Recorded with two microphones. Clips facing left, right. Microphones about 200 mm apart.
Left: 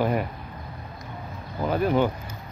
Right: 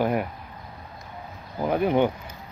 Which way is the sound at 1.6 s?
15° right (ahead or behind).